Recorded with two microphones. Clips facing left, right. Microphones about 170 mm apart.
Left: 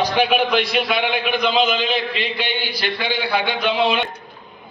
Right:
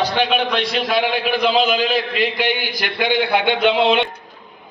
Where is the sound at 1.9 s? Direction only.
45° right (ahead or behind).